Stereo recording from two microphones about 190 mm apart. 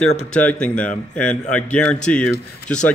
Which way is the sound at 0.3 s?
5° left (ahead or behind).